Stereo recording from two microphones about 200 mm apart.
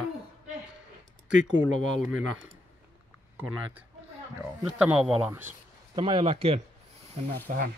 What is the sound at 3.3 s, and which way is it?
Speech, 10° right (ahead or behind).